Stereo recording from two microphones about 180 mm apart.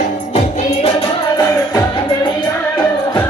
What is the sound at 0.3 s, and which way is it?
Music, 35° left (ahead or behind).